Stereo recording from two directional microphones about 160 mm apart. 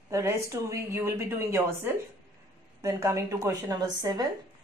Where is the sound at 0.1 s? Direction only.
20° right (ahead or behind).